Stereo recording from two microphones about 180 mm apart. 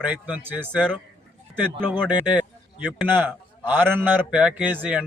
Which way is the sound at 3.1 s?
10° right (ahead or behind).